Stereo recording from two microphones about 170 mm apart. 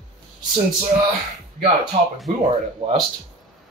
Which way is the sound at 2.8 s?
35° right (ahead or behind).